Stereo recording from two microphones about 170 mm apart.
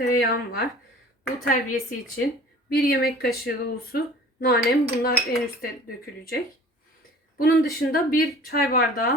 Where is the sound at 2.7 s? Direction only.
65° left (ahead or behind).